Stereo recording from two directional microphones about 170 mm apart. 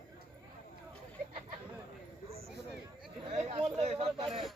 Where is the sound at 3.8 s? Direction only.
40° right (ahead or behind).